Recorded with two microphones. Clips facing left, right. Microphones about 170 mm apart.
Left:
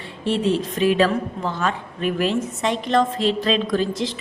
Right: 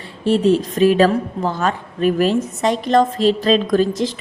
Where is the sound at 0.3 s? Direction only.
40° right (ahead or behind).